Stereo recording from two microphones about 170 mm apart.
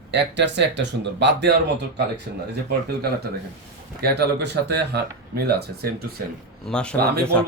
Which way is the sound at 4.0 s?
80° right.